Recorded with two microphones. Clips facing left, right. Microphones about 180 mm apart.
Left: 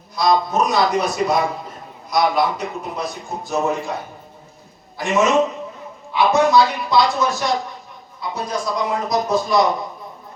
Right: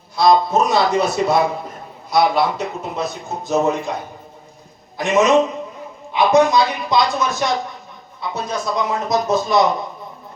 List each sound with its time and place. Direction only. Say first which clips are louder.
0.2 s a man's voice: right 3 dB; 25° right (ahead or behind)
4.9 s a man's voice: right 2 dB; 20° right (ahead or behind)